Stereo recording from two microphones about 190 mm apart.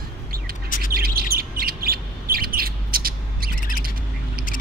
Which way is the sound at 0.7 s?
45° left (ahead or behind).